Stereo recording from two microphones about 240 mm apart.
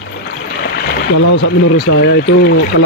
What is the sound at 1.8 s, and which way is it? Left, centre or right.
Speech, left.